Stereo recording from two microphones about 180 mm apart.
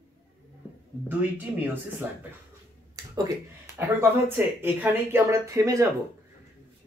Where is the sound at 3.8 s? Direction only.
10° right (ahead or behind).